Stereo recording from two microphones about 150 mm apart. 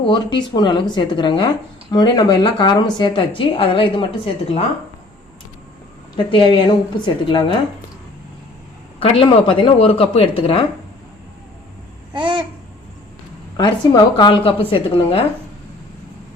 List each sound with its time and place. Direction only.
0.0 s speech: 30° left (ahead or behind)
6.3 s speech: 35° left (ahead or behind)
9.0 s speech: 35° left (ahead or behind)
12.1 s babbling: 30° right (ahead or behind)
13.6 s speech: 30° left (ahead or behind)